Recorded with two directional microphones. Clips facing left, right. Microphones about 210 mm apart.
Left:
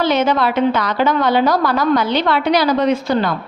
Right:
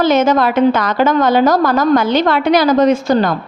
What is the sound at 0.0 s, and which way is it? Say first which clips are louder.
A woman's voice: right 4 dB; 45° right (ahead or behind).